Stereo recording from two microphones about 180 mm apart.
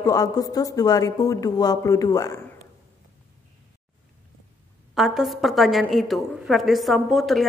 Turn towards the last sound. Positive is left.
turn(degrees=0)  # may be behind; listen again after turning